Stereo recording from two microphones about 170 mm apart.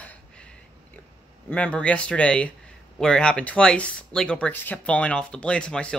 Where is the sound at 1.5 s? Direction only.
10° left (ahead or behind).